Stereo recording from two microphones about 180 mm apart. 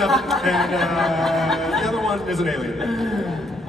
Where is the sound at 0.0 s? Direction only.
Centre (ahead or behind).